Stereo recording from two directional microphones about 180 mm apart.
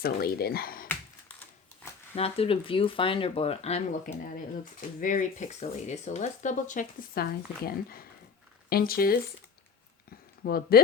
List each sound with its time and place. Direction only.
0.0 s speech: 60° left (ahead or behind)
2.1 s speech: 35° left (ahead or behind)
4.5 s speech: 50° left (ahead or behind)
10.1 s a sound: 55° left (ahead or behind)